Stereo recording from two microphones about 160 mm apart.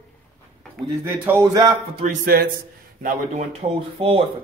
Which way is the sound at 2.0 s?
55° right (ahead or behind).